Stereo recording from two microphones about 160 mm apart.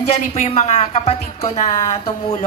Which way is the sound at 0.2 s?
45° left (ahead or behind).